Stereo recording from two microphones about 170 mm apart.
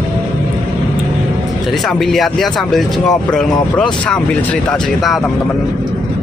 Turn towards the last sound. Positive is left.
turn(degrees=0)  # may be behind; listen again after turning